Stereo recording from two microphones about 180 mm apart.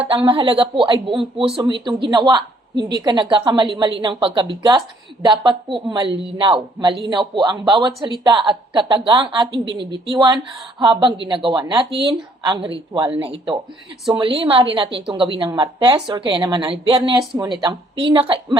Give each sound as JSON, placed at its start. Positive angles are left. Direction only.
{"t": 0.3, "sound": "a woman's voice", "side_deg": -30}